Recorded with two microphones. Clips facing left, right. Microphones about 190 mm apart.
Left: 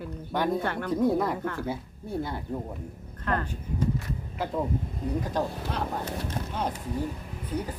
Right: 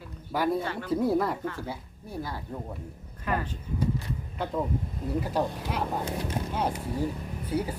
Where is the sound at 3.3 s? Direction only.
10° right (ahead or behind).